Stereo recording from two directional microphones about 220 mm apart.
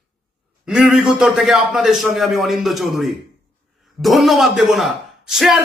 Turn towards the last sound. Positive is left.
turn(degrees=0)  # may be behind; listen again after turning